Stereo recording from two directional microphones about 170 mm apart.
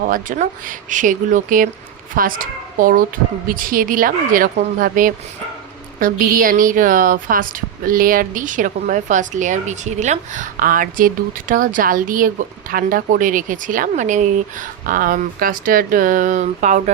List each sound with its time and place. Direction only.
0.1 s a woman's voice: 50° right (ahead or behind)